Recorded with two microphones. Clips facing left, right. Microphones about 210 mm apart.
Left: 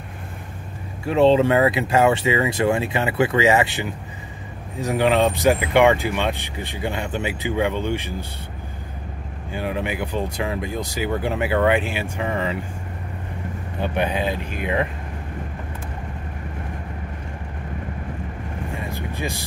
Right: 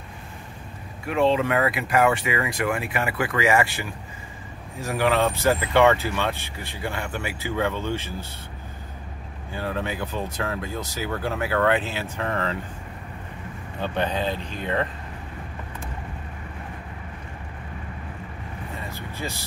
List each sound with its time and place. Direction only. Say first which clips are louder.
1.0 s speech: left 6 dB; 30° left (ahead or behind)
9.5 s speech: left 3 dB; 15° left (ahead or behind)
13.7 s speech: left 3 dB; 15° left (ahead or behind)
18.8 s vehicle: left 4 dB; 15° left (ahead or behind)